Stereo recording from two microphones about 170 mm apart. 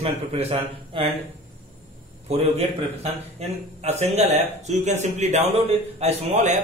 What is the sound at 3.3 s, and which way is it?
A man's voice, 40° right (ahead or behind).